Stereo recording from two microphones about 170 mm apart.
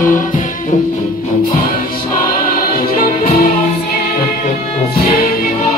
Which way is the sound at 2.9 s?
55° left (ahead or behind).